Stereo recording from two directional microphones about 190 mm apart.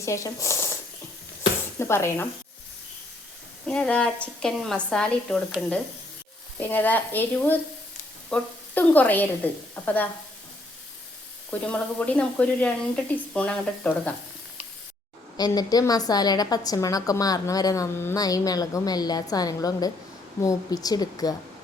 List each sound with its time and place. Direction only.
0.0 s speech: 15° left (ahead or behind)
1.8 s a woman's voice: 15° left (ahead or behind)
3.7 s a woman's voice: 5° left (ahead or behind)
11.6 s a woman's voice: 5° left (ahead or behind)
15.4 s a woman's voice: 20° left (ahead or behind)